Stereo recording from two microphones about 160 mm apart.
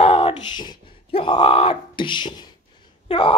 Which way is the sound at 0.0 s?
35° left (ahead or behind).